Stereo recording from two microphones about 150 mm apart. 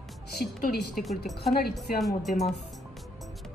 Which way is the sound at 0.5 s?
90° left.